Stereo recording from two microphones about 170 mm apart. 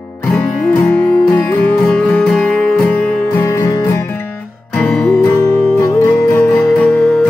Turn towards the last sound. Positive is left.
turn(degrees=10)  # may be behind; listen again after turning